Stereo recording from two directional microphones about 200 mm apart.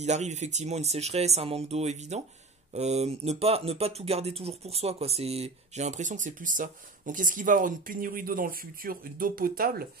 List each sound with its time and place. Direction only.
0.0 s speech: 35° right (ahead or behind)